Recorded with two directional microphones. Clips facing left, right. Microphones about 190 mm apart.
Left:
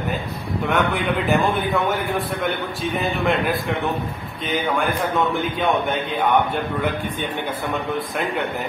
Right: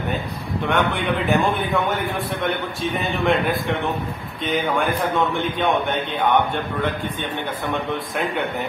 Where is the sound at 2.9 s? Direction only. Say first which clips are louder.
Right 1 dB; centre (ahead or behind).